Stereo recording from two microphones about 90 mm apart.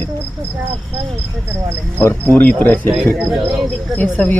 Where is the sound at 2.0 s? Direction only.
20° left (ahead or behind).